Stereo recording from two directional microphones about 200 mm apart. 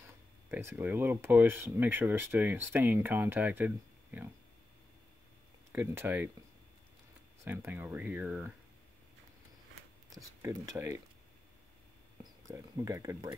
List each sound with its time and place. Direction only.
0.0 s speech: 10° right (ahead or behind)
5.7 s speech: 10° right (ahead or behind)
7.4 s speech: 10° right (ahead or behind)
10.0 s speech: 20° right (ahead or behind)
12.2 s speech: 20° right (ahead or behind)